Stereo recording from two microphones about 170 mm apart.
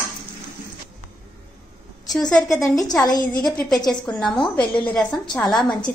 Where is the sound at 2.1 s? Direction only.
5° left (ahead or behind).